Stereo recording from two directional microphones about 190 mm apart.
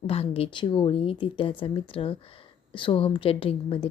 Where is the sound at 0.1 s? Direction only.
30° left (ahead or behind).